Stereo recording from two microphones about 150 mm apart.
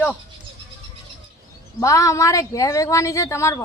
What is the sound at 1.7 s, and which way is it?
A woman's voice, 20° left (ahead or behind).